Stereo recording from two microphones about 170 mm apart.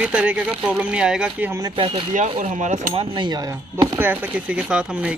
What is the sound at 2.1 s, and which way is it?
Speech, 45° right (ahead or behind).